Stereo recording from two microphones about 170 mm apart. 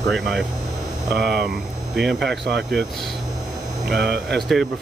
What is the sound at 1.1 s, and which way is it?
Speech, 75° right (ahead or behind).